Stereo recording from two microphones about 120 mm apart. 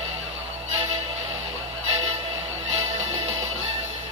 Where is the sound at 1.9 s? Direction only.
65° right (ahead or behind).